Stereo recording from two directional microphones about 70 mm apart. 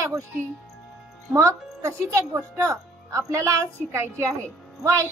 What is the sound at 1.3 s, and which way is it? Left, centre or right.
A woman's voice, right.